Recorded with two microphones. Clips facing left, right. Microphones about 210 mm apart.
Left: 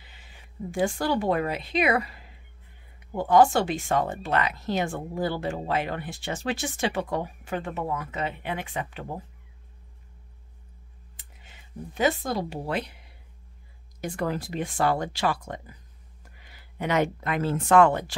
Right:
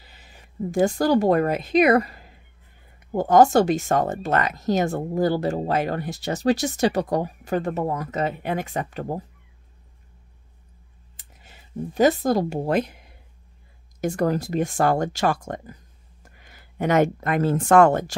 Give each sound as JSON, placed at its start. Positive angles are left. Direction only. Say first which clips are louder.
{"t": 0.0, "sound": "speech", "louder": "right 3 dB", "side_deg": -40}
{"t": 11.1, "sound": "speech", "louder": "right 3 dB", "side_deg": -40}